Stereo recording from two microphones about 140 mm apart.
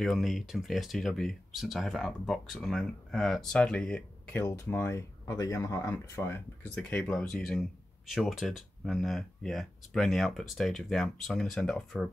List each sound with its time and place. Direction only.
0.0 s speech: centre (ahead or behind)